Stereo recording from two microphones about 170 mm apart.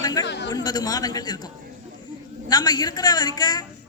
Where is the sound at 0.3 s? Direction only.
85° left.